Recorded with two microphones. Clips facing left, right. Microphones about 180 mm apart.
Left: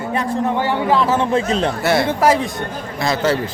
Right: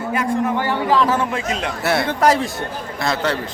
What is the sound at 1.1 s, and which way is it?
Speech, 35° left (ahead or behind).